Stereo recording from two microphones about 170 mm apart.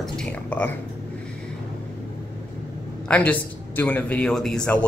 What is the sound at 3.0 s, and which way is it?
A man's voice, 10° left (ahead or behind).